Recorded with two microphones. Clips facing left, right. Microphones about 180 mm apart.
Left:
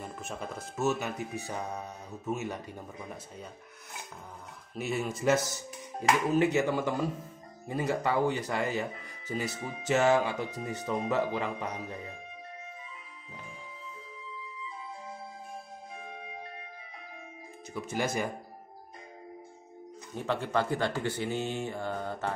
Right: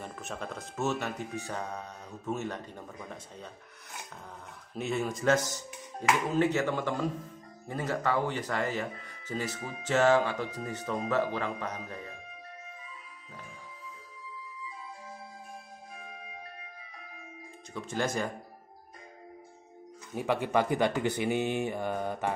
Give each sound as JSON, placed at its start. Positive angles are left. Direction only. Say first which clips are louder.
{"t": 0.0, "sound": "speech", "louder": "even", "side_deg": 5}
{"t": 4.7, "sound": "speech", "louder": "right 1 dB", "side_deg": 5}
{"t": 17.7, "sound": "speech", "louder": "even", "side_deg": 10}
{"t": 20.2, "sound": "speech", "louder": "right 2 dB", "side_deg": -15}